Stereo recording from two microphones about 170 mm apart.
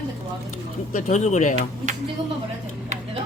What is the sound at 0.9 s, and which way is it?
Speech, 45° left (ahead or behind).